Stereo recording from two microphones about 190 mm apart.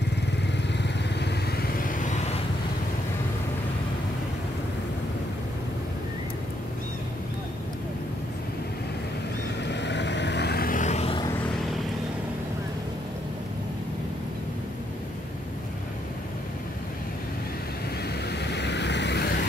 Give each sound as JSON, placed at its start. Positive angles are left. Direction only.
{"t": 0.8, "sound": "vehicle", "side_deg": 60}
{"t": 9.7, "sound": "vehicle", "side_deg": 65}
{"t": 18.3, "sound": "vehicle", "side_deg": 65}